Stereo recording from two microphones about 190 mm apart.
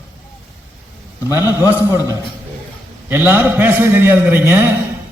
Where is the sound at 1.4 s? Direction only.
15° left (ahead or behind).